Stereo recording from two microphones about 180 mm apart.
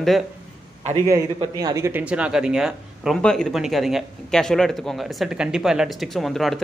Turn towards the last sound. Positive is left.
turn(degrees=0)  # may be behind; listen again after turning